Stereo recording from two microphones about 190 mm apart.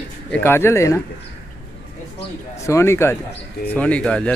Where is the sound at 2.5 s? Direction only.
15° left (ahead or behind).